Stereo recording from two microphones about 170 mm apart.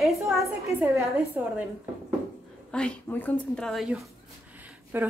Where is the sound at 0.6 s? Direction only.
15° right (ahead or behind).